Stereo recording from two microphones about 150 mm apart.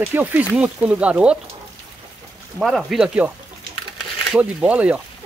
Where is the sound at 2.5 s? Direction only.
Centre (ahead or behind).